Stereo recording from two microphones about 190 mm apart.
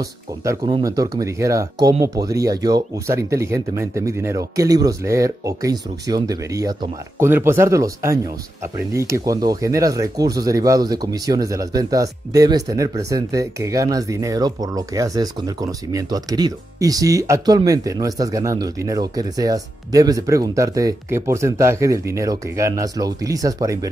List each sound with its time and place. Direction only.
0.8 s speech: 20° right (ahead or behind)